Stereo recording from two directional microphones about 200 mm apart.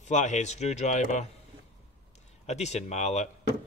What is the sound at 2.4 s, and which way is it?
Speech, 35° left (ahead or behind).